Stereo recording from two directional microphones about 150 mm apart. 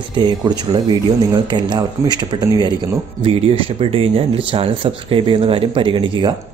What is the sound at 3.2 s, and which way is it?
Speech, 40° right (ahead or behind).